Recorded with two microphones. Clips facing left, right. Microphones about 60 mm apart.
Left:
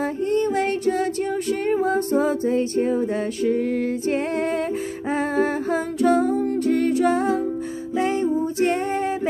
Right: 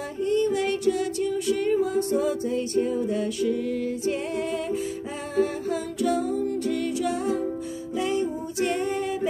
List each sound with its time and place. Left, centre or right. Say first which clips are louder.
0.2 s music: even; left
5.3 s humming: even; left
8.0 s music: left 5 dB; left